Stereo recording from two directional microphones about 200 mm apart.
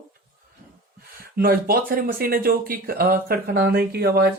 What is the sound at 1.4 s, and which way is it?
Speech, 50° right (ahead or behind).